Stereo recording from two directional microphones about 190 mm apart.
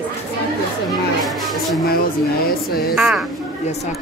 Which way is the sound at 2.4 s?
50° left (ahead or behind).